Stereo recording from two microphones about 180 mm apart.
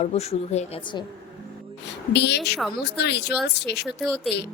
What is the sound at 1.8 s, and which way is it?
A woman's voice, 70° left (ahead or behind).